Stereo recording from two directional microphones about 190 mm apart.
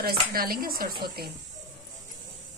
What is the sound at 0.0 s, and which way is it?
A woman's voice, 50° right (ahead or behind).